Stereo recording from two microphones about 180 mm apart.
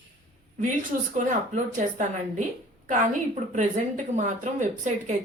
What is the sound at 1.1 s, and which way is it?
A woman's voice, 45° right (ahead or behind).